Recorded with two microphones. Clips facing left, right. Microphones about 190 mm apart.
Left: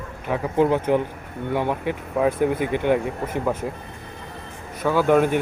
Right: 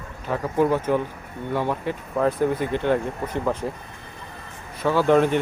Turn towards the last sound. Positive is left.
turn(degrees=10)  # may be behind; listen again after turning